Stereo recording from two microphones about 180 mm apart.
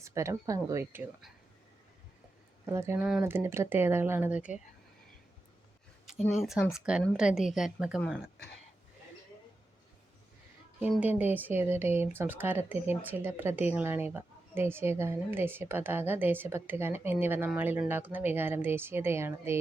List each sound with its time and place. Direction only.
0.0 s speech: 15° right (ahead or behind)
2.6 s speech: 15° right (ahead or behind)
6.1 s a woman's voice: centre (ahead or behind)
10.8 s speech: 5° right (ahead or behind)